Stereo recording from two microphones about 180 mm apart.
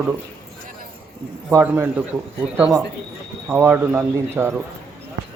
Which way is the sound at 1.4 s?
10° right (ahead or behind).